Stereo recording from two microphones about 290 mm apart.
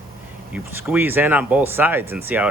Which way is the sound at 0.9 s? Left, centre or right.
Centre.